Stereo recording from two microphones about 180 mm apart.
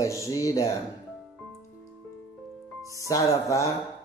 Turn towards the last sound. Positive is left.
turn(degrees=20)  # may be behind; listen again after turning